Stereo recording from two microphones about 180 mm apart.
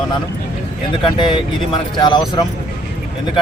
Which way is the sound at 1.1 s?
25° left (ahead or behind).